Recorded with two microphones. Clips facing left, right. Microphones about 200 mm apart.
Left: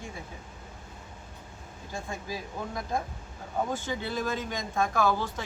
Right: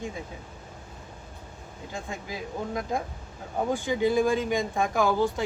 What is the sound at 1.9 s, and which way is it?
Speech, 15° right (ahead or behind).